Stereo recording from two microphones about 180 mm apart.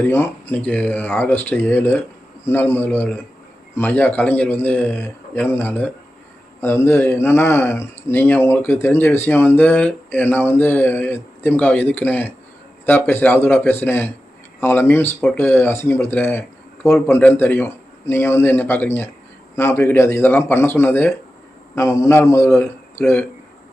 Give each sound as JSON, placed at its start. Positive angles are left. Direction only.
{"t": 0.0, "sound": "speech", "side_deg": 10}